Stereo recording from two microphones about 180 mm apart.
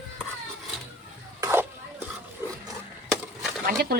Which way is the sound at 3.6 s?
60° right (ahead or behind).